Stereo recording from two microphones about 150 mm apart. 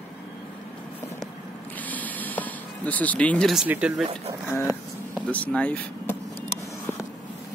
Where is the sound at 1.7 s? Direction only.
10° left (ahead or behind).